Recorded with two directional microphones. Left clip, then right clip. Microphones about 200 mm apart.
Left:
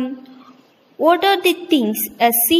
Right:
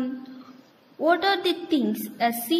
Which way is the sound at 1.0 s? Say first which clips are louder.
Left 7 dB; 25° left (ahead or behind).